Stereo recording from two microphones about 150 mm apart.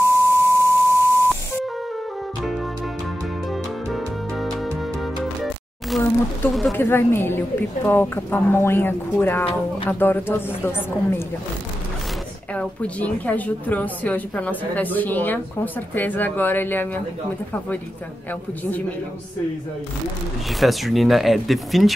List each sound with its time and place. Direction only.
0.0 s beep: 20° left (ahead or behind)
3.9 s music: centre (ahead or behind)
6.8 s a woman's voice: 15° left (ahead or behind)
12.5 s a woman's voice: 10° left (ahead or behind)
20.5 s speech: centre (ahead or behind)